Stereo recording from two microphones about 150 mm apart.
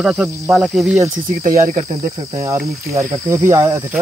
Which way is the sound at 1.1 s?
60° right (ahead or behind).